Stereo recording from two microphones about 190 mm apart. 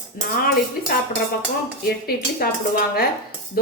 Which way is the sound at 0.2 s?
50° left (ahead or behind).